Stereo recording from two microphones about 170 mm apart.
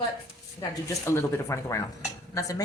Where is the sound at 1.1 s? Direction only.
15° left (ahead or behind).